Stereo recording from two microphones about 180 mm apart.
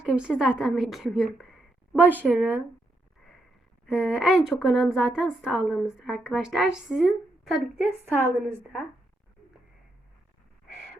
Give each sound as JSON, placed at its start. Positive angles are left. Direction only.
{"t": 0.0, "sound": "a woman's voice", "side_deg": -5}
{"t": 3.8, "sound": "a woman's voice", "side_deg": -5}